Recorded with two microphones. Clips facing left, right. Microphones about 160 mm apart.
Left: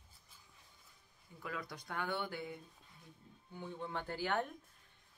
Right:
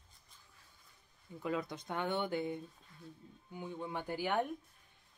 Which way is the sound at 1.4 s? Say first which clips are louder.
Right 7 dB; 25° right (ahead or behind).